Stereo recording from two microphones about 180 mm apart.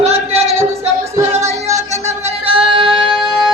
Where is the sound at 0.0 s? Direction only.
35° right (ahead or behind).